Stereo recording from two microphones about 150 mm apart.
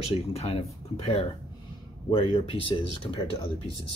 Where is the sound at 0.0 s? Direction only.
45° left (ahead or behind).